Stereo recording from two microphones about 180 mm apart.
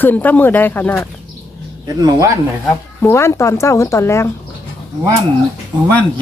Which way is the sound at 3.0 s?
15° left (ahead or behind).